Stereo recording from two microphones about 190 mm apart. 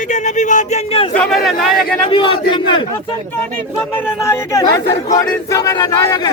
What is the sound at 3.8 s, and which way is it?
Battle cry, 10° left (ahead or behind).